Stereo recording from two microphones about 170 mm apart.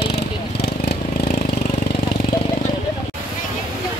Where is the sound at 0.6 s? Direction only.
70° left (ahead or behind).